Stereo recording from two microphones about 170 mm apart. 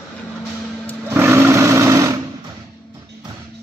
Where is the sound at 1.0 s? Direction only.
15° right (ahead or behind).